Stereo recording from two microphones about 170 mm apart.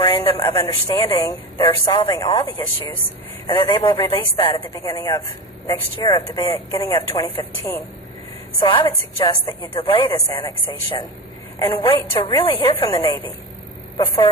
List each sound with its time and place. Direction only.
0.0 s speech: 20° left (ahead or behind)